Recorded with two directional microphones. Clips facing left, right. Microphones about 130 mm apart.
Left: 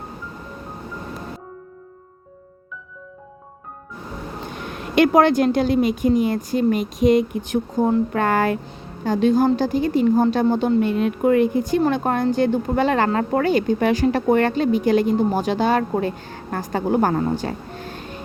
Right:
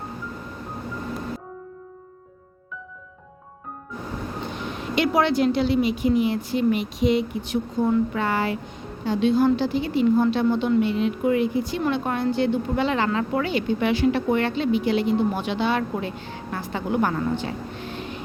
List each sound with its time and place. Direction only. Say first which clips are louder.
4.9 s a woman's voice: left 6 dB; 50° left (ahead or behind)
8.1 s a woman's voice: left 5 dB; 50° left (ahead or behind)